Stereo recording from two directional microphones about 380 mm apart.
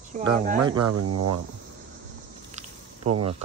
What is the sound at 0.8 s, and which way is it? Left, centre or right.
Speech, right.